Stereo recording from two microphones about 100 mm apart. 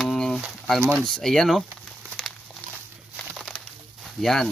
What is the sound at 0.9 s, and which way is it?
Speech, 5° left (ahead or behind).